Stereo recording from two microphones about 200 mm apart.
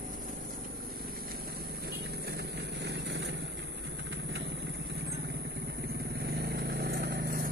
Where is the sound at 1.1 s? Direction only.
50° right (ahead or behind).